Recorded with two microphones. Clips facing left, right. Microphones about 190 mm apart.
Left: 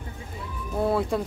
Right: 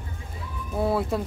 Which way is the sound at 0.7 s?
Centre (ahead or behind).